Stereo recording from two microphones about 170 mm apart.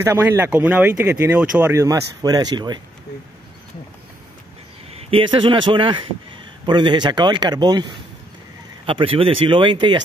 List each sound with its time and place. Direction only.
0.0 s speech: 15° right (ahead or behind)
5.1 s a man's voice: 30° right (ahead or behind)